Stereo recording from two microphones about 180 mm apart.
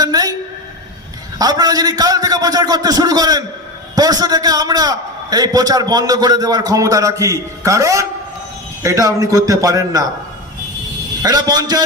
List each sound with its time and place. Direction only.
0.0 s a sound: 20° right (ahead or behind)
1.4 s a man's voice: 20° right (ahead or behind)
11.2 s a man's voice: 20° right (ahead or behind)